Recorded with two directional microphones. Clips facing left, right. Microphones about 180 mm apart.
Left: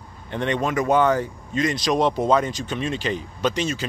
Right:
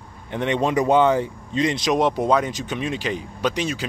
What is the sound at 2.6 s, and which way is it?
Speech, 15° right (ahead or behind).